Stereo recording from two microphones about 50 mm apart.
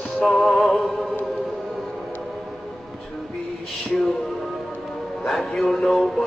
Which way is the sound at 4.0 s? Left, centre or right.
Centre.